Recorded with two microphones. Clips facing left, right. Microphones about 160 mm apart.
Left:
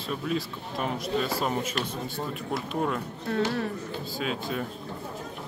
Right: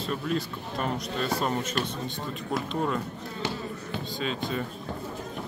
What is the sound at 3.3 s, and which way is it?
Speech, 70° left (ahead or behind).